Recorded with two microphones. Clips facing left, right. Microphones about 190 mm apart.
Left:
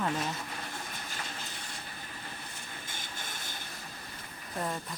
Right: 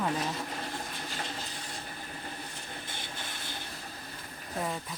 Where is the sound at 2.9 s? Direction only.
45° left (ahead or behind).